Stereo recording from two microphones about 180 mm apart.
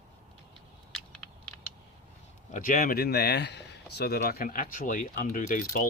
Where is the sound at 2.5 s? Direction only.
50° left (ahead or behind).